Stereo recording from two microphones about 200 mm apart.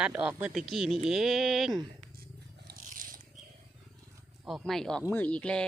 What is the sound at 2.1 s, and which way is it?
Cat, 50° right (ahead or behind).